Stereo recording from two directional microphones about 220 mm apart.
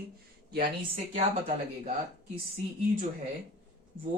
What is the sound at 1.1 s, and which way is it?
Speech, 30° right (ahead or behind).